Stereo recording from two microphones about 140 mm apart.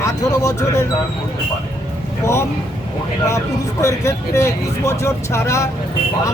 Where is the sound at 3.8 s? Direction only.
20° left (ahead or behind).